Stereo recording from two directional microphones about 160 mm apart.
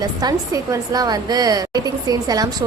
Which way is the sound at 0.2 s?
20° right (ahead or behind).